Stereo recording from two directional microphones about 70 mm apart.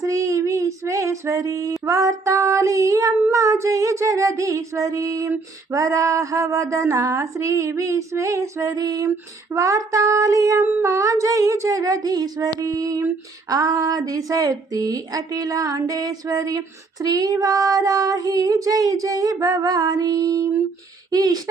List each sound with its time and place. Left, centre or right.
0.0 s child singing: right
3.3 s female singing: right
10.6 s female singing: right
13.5 s speech: right